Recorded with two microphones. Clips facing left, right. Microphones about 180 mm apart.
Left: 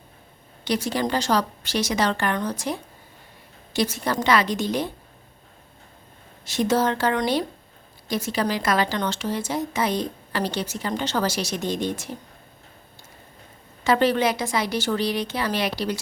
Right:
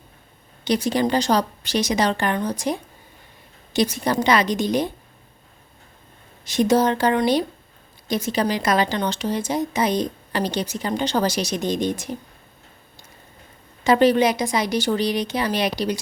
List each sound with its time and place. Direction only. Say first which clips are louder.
0.6 s speech: right 4 dB; 20° right (ahead or behind)
6.4 s speech: right 4 dB; 15° right (ahead or behind)
13.8 s speech: right 4 dB; 15° right (ahead or behind)